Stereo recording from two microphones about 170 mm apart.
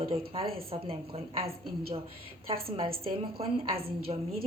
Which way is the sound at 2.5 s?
35° right (ahead or behind).